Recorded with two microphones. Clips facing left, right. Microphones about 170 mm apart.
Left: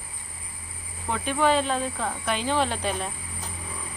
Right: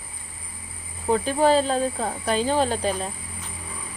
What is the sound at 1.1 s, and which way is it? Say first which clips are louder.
Speech: right 4 dB; 35° right (ahead or behind).